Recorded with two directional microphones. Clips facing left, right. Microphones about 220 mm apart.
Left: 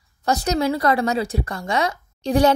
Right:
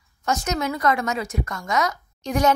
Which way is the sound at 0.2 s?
35° left (ahead or behind).